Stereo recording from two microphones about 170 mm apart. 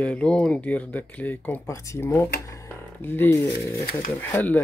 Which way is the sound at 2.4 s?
20° left (ahead or behind).